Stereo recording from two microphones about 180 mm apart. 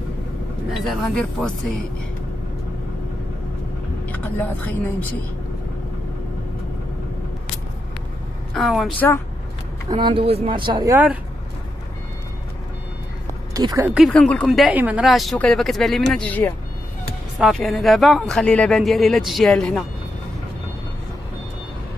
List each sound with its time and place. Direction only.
0.7 s speech: centre (ahead or behind)
4.0 s speech: 10° left (ahead or behind)
8.5 s speech: centre (ahead or behind)
9.8 s speech: 25° right (ahead or behind)
13.5 s speech: 20° right (ahead or behind)
13.9 s speech: centre (ahead or behind)